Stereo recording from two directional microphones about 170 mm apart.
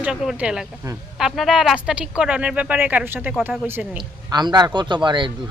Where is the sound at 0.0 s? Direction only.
5° right (ahead or behind).